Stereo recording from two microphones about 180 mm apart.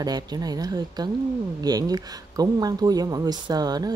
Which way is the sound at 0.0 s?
20° right (ahead or behind).